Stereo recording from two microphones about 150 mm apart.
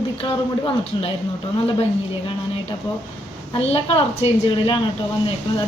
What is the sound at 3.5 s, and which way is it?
A woman's voice, 35° left (ahead or behind).